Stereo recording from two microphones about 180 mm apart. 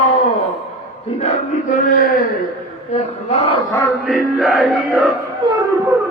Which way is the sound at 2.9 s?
35° left (ahead or behind).